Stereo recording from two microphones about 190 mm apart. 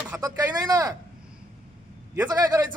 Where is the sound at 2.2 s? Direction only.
20° right (ahead or behind).